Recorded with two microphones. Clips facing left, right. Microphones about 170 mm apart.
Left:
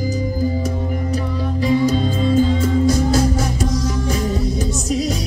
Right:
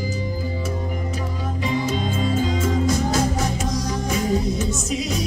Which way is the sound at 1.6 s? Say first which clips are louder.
Left 7 dB; 40° left (ahead or behind).